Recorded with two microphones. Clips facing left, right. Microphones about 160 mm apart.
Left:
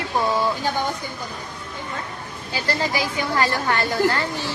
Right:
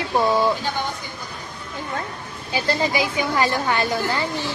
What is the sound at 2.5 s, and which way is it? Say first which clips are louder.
A woman's voice: right 2 dB; 20° right (ahead or behind).